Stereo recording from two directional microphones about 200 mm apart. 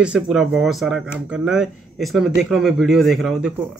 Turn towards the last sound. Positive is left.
turn(degrees=0)  # may be behind; listen again after turning